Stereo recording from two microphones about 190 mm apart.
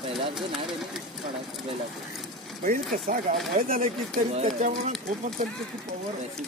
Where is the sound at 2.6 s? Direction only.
45° right (ahead or behind).